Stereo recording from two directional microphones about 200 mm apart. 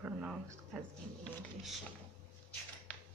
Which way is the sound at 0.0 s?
5° right (ahead or behind).